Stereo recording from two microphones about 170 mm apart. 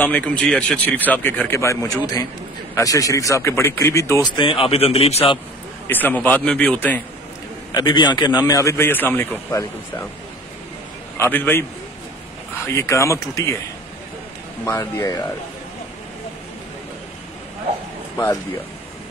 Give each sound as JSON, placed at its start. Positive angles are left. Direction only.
{"t": 0.0, "sound": "speech", "side_deg": 10}
{"t": 4.3, "sound": "speech", "side_deg": 30}
{"t": 5.9, "sound": "speech", "side_deg": 10}
{"t": 7.7, "sound": "a man's voice", "side_deg": 25}
{"t": 11.1, "sound": "speech", "side_deg": 10}
{"t": 12.6, "sound": "speech", "side_deg": 15}
{"t": 14.6, "sound": "a man's voice", "side_deg": 20}